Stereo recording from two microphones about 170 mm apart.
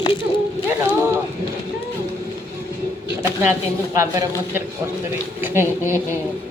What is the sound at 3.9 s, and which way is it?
Speech, 15° right (ahead or behind).